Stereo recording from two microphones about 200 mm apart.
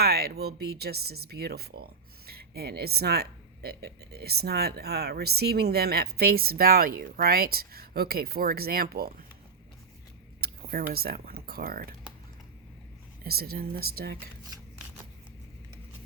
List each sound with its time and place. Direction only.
0.0 s speech: 50° right (ahead or behind)
10.4 s speech: 50° right (ahead or behind)
13.2 s speech: 50° right (ahead or behind)